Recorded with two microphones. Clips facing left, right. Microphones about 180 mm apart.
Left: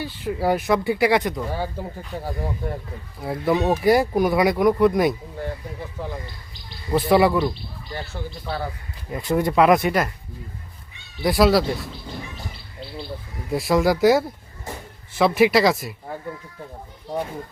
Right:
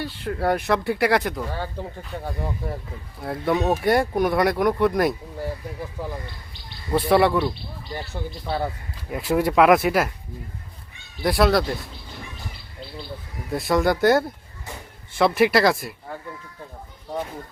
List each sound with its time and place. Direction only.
0.0 s speech: 5° left (ahead or behind)
1.5 s speech: 10° left (ahead or behind)
2.0 s speech: centre (ahead or behind)
6.9 s speech: centre (ahead or behind)
7.9 s speech: 20° right (ahead or behind)
9.1 s speech: 5° right (ahead or behind)
11.2 s speech: centre (ahead or behind)
13.5 s speech: 5° left (ahead or behind)